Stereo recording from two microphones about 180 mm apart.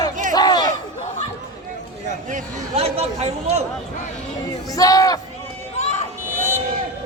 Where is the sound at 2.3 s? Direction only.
40° right (ahead or behind).